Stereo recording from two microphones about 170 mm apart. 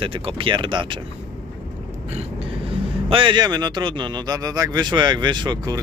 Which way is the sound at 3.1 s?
30° right (ahead or behind).